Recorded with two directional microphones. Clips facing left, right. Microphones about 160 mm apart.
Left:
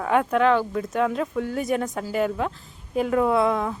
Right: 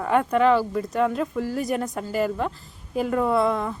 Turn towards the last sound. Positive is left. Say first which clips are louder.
# left 1 dB
turn(degrees=0)  # may be behind; listen again after turning